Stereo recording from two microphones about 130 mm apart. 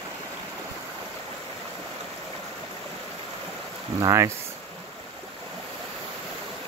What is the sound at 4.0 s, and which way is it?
Speech, 25° right (ahead or behind).